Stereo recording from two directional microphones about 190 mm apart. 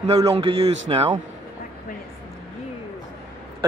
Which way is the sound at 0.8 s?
30° right (ahead or behind).